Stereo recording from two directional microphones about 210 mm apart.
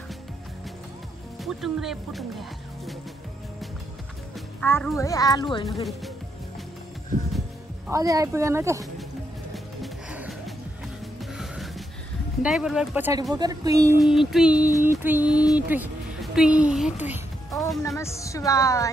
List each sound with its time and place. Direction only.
1.4 s a sound: centre (ahead or behind)
4.6 s a child's voice: 10° left (ahead or behind)
5.7 s a sound: centre (ahead or behind)
7.9 s speech: 15° right (ahead or behind)
9.5 s music: 5° right (ahead or behind)
12.4 s speech: 5° right (ahead or behind)
13.9 s a sound: centre (ahead or behind)
17.5 s music: centre (ahead or behind)
17.8 s a child's voice: 15° left (ahead or behind)